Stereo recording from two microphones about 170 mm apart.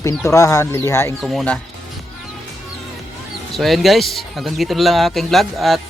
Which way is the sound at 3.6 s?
Centre (ahead or behind).